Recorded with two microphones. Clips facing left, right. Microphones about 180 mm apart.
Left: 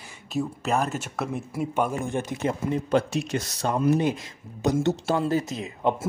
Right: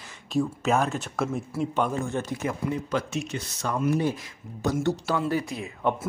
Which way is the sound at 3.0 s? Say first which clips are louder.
Left 3 dB; 35° left (ahead or behind).